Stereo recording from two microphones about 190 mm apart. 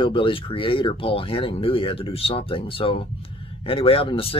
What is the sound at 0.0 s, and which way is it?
Speech, 25° left (ahead or behind).